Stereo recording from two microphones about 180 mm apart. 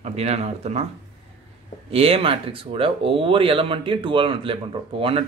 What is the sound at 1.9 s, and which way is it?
Speech, 30° right (ahead or behind).